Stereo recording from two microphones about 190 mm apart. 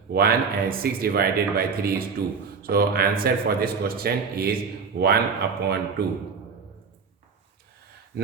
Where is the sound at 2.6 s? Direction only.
50° right (ahead or behind).